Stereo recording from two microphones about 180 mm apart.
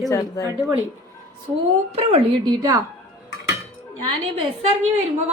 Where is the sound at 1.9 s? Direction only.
35° right (ahead or behind).